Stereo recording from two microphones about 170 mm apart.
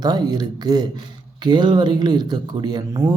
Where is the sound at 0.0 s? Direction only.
25° right (ahead or behind).